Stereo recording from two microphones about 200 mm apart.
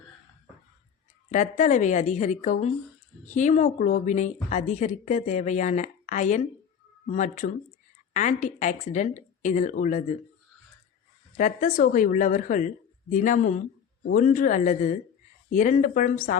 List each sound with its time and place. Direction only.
1.3 s speech: 35° left (ahead or behind)
11.3 s speech: 40° left (ahead or behind)